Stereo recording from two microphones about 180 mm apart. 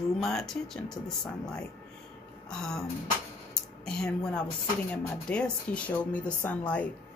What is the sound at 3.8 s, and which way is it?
Speech, 5° left (ahead or behind).